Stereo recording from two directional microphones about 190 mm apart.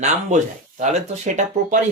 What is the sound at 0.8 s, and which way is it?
Speech, 40° right (ahead or behind).